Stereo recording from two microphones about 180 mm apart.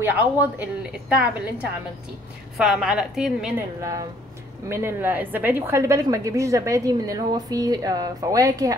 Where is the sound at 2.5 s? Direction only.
5° right (ahead or behind).